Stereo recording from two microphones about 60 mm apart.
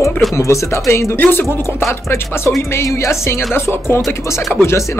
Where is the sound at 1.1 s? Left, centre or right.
Left.